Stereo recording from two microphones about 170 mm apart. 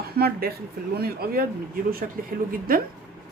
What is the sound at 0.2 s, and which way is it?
Speech, 65° right (ahead or behind).